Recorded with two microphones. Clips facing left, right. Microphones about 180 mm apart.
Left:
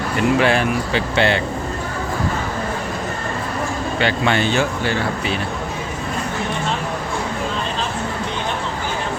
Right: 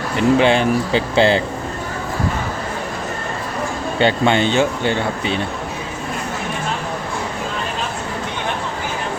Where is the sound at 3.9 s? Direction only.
25° right (ahead or behind).